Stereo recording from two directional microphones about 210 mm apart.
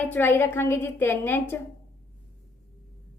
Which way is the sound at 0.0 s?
10° left (ahead or behind).